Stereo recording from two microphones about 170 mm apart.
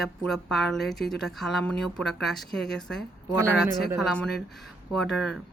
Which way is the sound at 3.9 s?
Centre (ahead or behind).